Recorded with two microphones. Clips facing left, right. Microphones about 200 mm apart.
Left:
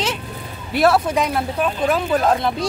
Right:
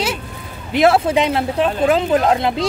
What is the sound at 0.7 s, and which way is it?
Speech, 20° right (ahead or behind).